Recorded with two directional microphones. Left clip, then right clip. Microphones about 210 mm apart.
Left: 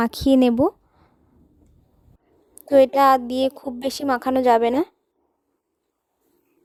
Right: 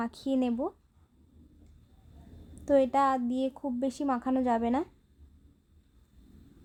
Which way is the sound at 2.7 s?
50° left (ahead or behind).